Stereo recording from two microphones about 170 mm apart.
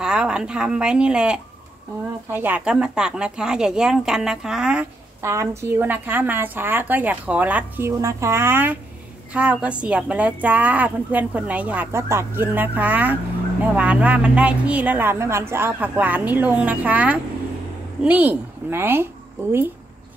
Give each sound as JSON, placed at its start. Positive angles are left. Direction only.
{"t": 0.0, "sound": "a woman's voice", "side_deg": -5}
{"t": 5.2, "sound": "a woman's voice", "side_deg": -20}